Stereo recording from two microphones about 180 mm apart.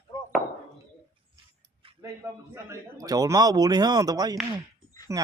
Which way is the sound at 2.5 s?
15° right (ahead or behind).